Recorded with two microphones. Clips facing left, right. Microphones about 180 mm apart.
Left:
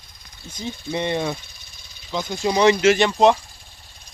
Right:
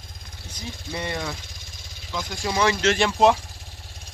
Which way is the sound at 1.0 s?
25° left (ahead or behind).